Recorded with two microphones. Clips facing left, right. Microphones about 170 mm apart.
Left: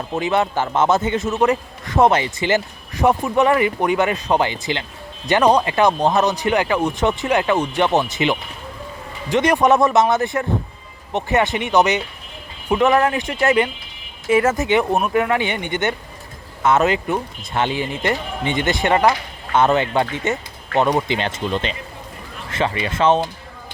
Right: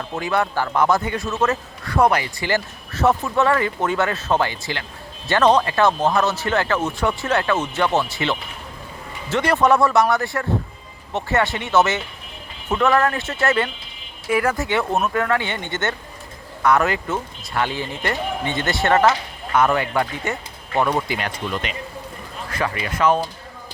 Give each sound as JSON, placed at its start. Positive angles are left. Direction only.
{"t": 0.1, "sound": "a man's voice", "side_deg": 20}